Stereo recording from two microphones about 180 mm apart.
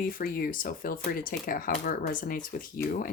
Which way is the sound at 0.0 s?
55° left (ahead or behind).